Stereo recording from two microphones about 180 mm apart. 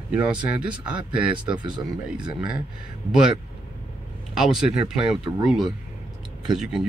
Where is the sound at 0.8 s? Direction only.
5° right (ahead or behind).